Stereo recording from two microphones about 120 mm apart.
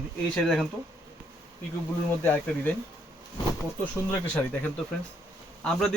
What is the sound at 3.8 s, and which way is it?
A man's voice, 10° left (ahead or behind).